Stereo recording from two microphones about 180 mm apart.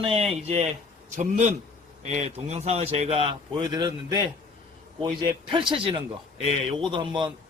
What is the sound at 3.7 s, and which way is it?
Speech, 25° right (ahead or behind).